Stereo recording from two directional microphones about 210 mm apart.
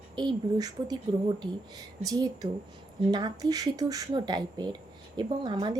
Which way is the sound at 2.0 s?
15° right (ahead or behind).